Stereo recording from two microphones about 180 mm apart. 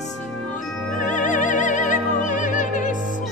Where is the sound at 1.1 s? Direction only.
45° left (ahead or behind).